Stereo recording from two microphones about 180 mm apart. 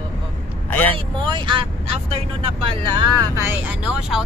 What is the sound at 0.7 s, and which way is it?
Vehicle, 10° left (ahead or behind).